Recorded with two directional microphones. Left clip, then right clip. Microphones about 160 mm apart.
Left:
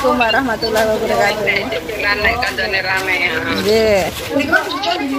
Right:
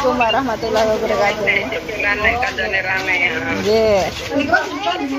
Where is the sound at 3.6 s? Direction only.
15° left (ahead or behind).